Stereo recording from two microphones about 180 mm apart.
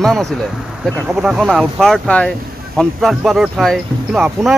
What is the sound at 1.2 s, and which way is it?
Speech, centre (ahead or behind).